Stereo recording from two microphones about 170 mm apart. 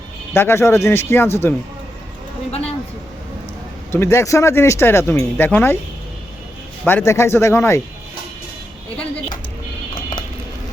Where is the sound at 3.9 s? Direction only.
15° left (ahead or behind).